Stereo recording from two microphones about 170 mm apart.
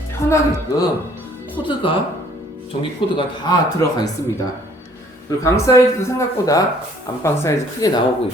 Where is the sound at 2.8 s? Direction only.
25° left (ahead or behind).